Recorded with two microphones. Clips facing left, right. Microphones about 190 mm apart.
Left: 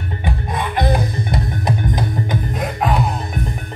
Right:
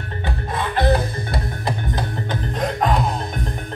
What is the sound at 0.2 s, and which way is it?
Music, 15° left (ahead or behind).